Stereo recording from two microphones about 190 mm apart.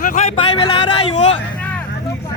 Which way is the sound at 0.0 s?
45° left (ahead or behind).